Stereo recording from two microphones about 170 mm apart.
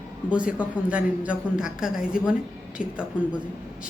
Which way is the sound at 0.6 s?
5° right (ahead or behind).